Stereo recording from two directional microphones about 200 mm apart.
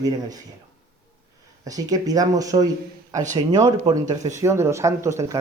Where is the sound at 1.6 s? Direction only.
20° right (ahead or behind).